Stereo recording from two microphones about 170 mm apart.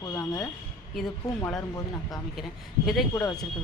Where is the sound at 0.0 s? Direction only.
20° left (ahead or behind).